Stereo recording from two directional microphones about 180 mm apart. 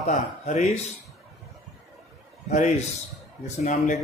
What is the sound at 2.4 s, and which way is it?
A man's voice, 40° left (ahead or behind).